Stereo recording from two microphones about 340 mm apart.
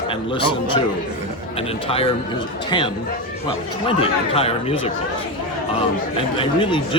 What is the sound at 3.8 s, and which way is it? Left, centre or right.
Speech, centre.